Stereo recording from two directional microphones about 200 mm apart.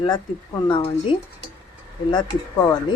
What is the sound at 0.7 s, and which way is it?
Speech, 25° left (ahead or behind).